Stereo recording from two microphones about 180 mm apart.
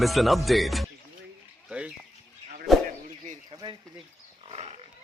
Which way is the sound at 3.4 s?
25° right (ahead or behind).